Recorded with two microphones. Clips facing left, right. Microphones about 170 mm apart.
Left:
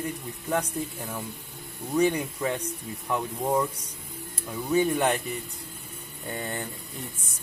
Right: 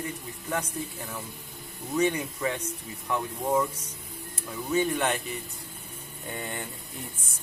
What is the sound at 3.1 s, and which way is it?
Speech, 10° left (ahead or behind).